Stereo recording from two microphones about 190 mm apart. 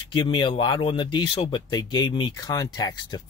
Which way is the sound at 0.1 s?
25° left (ahead or behind).